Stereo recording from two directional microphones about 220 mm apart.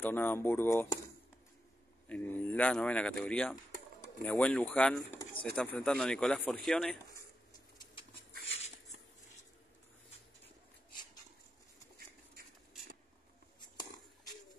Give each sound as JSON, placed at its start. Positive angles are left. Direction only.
{"t": 0.0, "sound": "speech", "side_deg": 10}
{"t": 2.0, "sound": "speech", "side_deg": 10}
{"t": 8.5, "sound": "a sound", "side_deg": 30}